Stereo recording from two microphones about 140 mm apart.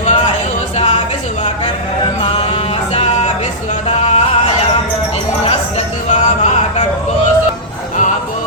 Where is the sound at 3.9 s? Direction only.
50° left (ahead or behind).